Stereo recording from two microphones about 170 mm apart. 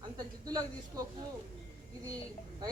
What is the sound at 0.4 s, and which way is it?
Speech, 20° right (ahead or behind).